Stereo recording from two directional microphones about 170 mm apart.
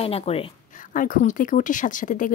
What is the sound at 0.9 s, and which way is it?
Speech, 50° left (ahead or behind).